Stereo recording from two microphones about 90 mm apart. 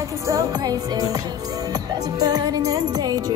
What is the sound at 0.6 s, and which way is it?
Music, 45° right (ahead or behind).